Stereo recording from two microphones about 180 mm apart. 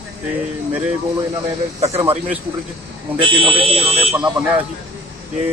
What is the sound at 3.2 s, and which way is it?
Speech, 30° right (ahead or behind).